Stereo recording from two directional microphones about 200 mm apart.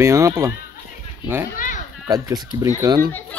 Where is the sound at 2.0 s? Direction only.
20° right (ahead or behind).